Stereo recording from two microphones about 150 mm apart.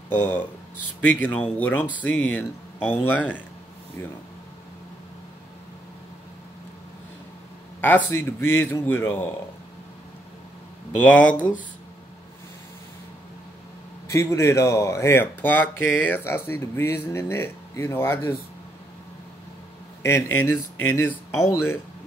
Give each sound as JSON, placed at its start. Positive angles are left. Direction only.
{"t": 0.1, "sound": "speech", "side_deg": 10}
{"t": 7.8, "sound": "speech", "side_deg": 15}
{"t": 11.0, "sound": "speech", "side_deg": 10}
{"t": 14.0, "sound": "speech", "side_deg": 20}
{"t": 20.0, "sound": "speech", "side_deg": 15}